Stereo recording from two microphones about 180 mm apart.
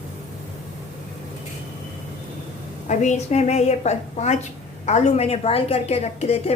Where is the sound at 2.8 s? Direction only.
40° left (ahead or behind).